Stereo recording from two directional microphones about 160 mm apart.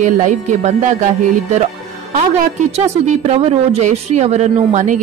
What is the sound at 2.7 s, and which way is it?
Speech, 40° right (ahead or behind).